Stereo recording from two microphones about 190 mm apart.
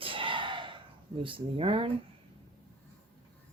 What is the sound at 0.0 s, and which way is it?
Gasp, 25° right (ahead or behind).